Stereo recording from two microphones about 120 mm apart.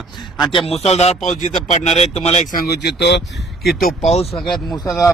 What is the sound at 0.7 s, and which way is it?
Speech, 60° left (ahead or behind).